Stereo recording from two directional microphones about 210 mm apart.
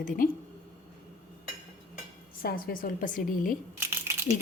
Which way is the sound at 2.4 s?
45° left (ahead or behind).